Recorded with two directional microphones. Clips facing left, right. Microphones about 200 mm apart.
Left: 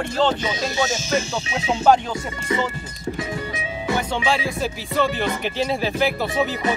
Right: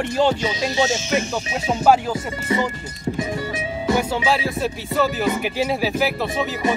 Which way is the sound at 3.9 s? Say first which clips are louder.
Right 2 dB; 5° right (ahead or behind).